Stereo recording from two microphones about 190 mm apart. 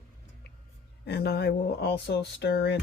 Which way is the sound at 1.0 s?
60° left (ahead or behind).